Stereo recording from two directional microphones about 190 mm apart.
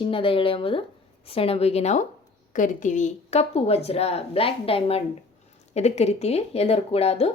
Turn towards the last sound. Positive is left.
turn(degrees=30)  # may be behind; listen again after turning